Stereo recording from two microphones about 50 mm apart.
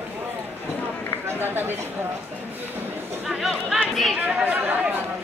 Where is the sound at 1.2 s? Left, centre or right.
Right.